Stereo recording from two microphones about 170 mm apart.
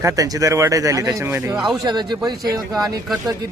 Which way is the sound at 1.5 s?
Centre (ahead or behind).